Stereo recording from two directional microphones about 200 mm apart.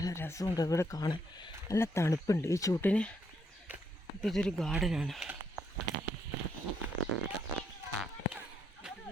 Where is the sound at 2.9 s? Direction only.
5° left (ahead or behind).